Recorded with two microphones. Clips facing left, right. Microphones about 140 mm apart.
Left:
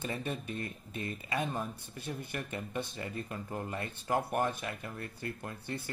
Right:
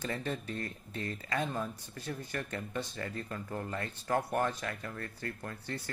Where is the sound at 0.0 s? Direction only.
15° left (ahead or behind).